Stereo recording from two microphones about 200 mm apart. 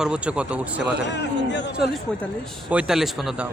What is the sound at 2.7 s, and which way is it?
Speech, 5° right (ahead or behind).